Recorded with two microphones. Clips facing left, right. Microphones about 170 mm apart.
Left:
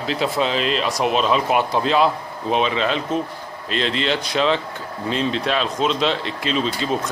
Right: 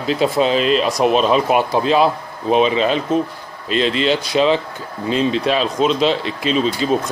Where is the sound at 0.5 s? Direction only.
25° left (ahead or behind).